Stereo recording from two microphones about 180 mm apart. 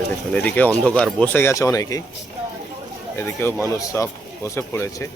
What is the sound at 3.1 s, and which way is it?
Speech, 10° left (ahead or behind).